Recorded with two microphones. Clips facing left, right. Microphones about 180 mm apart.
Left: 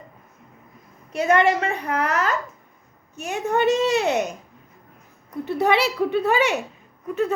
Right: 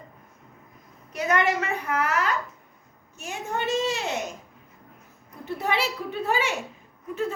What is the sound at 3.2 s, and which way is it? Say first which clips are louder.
A woman's voice: left 9 dB; 65° left (ahead or behind).